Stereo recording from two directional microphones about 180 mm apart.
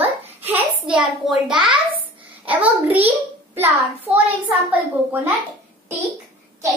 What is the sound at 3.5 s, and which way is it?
Speech, 10° right (ahead or behind).